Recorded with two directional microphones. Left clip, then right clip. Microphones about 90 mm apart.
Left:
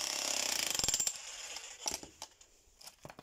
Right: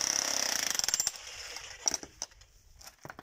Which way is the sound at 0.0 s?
10° left (ahead or behind).